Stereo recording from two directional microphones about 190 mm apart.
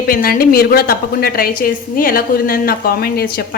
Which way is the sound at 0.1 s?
50° left (ahead or behind).